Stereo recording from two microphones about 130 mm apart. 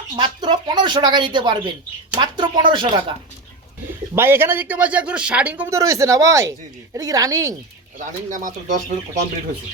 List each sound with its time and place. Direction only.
0.2 s speech: 35° right (ahead or behind)
4.1 s speech: 20° right (ahead or behind)
5.7 s speech: 25° right (ahead or behind)
7.9 s speech: 85° right